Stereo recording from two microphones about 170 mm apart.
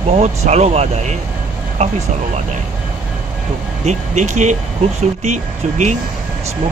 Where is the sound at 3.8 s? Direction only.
45° right (ahead or behind).